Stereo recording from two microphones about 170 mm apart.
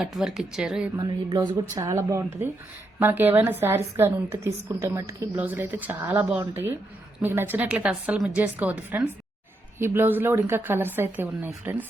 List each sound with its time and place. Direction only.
0.0 s speech: centre (ahead or behind)
0.9 s a sound: 25° right (ahead or behind)
1.8 s a woman's voice: 20° right (ahead or behind)